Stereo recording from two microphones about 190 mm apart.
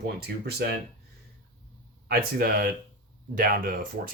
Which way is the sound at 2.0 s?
50° right (ahead or behind).